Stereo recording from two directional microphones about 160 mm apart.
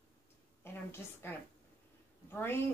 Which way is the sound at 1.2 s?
15° left (ahead or behind).